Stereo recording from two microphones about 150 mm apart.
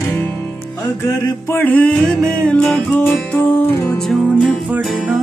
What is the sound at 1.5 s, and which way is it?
Music, 10° left (ahead or behind).